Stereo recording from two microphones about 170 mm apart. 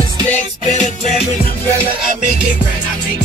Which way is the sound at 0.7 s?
45° left (ahead or behind).